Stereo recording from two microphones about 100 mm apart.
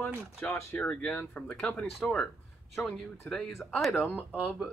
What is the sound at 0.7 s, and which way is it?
Speech, 10° left (ahead or behind).